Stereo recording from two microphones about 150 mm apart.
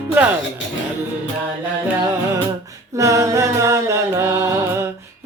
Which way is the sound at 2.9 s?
20° right (ahead or behind).